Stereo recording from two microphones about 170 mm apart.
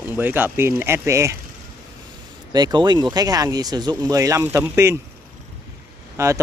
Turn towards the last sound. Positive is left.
turn(degrees=-15)  # may be behind; listen again after turning